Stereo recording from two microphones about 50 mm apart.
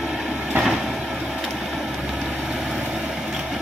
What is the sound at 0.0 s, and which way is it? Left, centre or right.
Train, centre.